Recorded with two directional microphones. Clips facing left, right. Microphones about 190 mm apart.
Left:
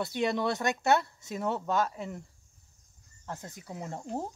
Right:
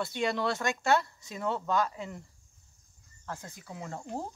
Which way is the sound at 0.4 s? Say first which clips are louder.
Left 1 dB; 20° left (ahead or behind).